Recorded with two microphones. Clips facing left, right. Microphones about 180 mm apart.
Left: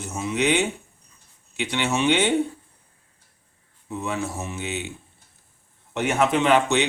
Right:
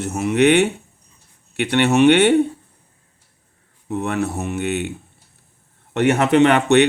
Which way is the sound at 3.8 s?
65° right (ahead or behind).